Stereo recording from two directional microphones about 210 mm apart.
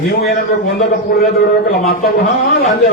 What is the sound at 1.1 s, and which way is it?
Speech, 45° left (ahead or behind).